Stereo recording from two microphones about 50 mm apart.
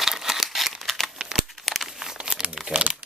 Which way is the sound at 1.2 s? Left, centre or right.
Centre.